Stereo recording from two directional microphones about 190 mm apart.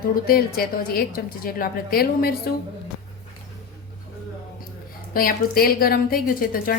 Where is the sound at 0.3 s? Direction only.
50° left (ahead or behind).